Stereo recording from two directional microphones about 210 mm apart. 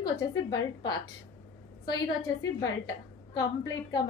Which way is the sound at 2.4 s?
15° left (ahead or behind).